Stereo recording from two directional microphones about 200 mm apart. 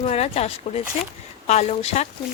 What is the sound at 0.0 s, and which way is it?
Speech, 30° left (ahead or behind).